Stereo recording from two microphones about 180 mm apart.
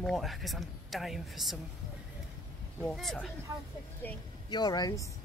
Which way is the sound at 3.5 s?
20° right (ahead or behind).